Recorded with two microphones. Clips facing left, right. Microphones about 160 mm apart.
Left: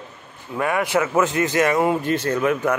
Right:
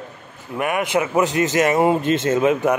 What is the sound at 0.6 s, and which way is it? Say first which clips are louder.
A man's voice: even; 20° right (ahead or behind).